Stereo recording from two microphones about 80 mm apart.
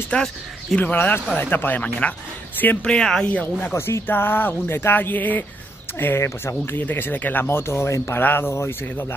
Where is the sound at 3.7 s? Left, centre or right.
Left.